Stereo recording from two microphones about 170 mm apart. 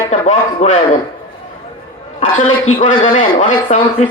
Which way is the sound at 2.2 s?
40° left (ahead or behind).